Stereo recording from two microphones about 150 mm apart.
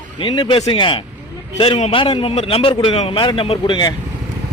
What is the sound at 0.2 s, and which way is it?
A man's voice, 35° left (ahead or behind).